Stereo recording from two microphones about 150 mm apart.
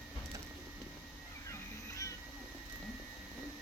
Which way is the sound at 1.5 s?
20° left (ahead or behind).